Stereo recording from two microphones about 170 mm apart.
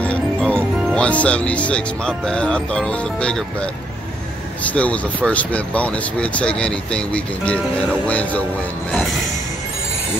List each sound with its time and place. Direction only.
0.0 s music: 5° left (ahead or behind)
0.9 s speech: 5° left (ahead or behind)
4.6 s speech: 10° left (ahead or behind)